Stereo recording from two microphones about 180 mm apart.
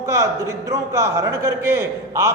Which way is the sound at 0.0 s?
15° right (ahead or behind).